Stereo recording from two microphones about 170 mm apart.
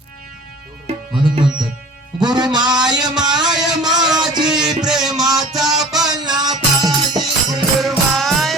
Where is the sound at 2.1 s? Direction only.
25° right (ahead or behind).